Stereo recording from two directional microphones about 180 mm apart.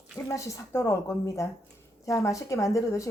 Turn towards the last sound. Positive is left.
turn(degrees=15)  # may be behind; listen again after turning